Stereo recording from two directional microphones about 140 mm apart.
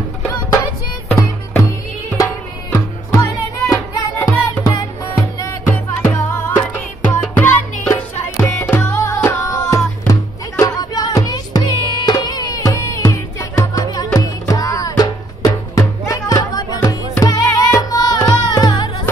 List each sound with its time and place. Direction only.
1.5 s music: 15° left (ahead or behind)
4.6 s music: 25° left (ahead or behind)
5.7 s music: 15° left (ahead or behind); by 19.0 s 30° left (ahead or behind)